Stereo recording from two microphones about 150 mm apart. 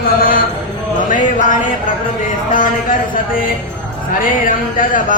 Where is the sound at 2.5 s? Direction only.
65° left (ahead or behind).